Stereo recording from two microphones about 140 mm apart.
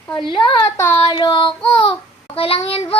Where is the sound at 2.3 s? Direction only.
45° left (ahead or behind).